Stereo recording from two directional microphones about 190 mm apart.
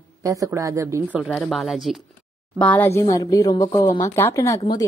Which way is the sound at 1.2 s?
5° left (ahead or behind).